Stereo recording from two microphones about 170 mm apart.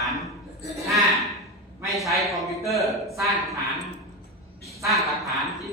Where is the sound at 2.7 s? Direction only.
Centre (ahead or behind).